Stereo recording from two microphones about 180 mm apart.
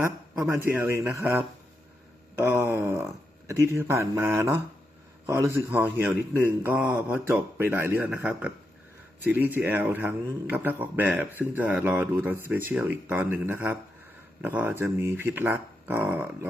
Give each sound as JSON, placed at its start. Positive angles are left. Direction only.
{"t": 0.0, "sound": "a man's voice", "side_deg": -15}
{"t": 2.4, "sound": "a sound", "side_deg": -15}
{"t": 3.4, "sound": "a man's voice", "side_deg": -15}